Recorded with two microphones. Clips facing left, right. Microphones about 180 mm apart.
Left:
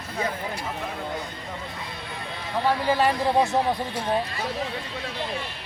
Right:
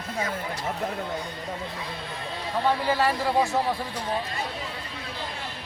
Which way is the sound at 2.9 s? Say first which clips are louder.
Left 2 dB; 20° left (ahead or behind).